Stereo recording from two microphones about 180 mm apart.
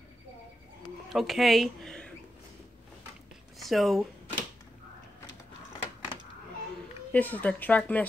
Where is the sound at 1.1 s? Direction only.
Centre (ahead or behind).